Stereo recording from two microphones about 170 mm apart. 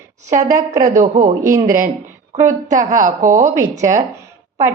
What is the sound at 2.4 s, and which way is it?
A woman's voice, 45° right (ahead or behind).